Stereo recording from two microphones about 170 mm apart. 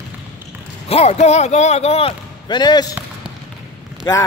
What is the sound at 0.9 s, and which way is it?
Speech, 40° left (ahead or behind).